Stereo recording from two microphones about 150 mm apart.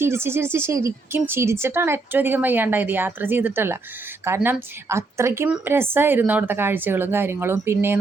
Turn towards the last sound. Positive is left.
turn(degrees=-15)  # may be behind; listen again after turning